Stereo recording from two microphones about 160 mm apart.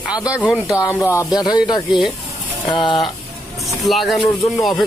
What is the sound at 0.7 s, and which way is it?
Speech, 20° left (ahead or behind).